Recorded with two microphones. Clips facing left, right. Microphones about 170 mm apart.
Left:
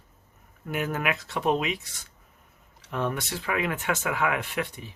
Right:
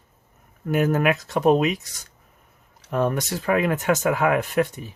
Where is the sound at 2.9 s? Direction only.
45° right (ahead or behind).